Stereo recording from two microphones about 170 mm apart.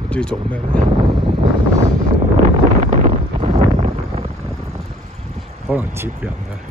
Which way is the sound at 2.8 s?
45° right (ahead or behind).